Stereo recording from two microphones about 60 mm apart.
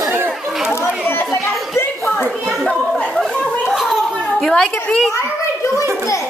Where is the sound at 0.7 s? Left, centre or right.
Left.